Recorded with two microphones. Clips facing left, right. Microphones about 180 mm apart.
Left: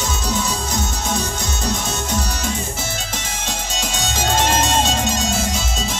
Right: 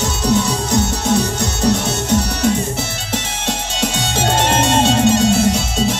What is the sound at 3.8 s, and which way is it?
Music, 65° right (ahead or behind).